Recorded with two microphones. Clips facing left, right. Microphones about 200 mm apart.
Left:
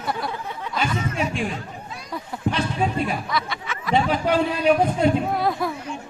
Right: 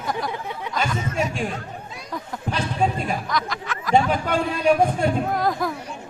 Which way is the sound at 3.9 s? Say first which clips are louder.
Even; 50° right (ahead or behind).